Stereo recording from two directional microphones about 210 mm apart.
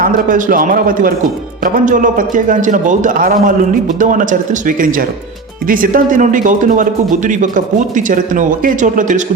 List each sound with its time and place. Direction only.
0.0 s a man's voice: 40° right (ahead or behind)